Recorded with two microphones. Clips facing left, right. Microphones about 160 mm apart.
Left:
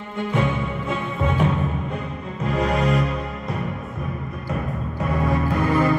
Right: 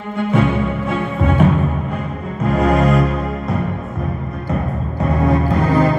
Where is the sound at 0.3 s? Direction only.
65° right (ahead or behind); by 3.1 s 50° right (ahead or behind).